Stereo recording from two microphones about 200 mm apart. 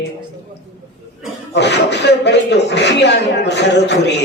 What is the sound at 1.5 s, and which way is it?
A man's voice, 60° left (ahead or behind).